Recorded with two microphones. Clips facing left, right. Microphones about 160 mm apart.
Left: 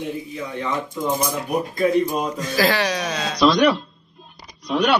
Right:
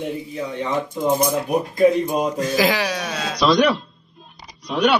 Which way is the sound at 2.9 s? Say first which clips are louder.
Left 1 dB; 5° right (ahead or behind).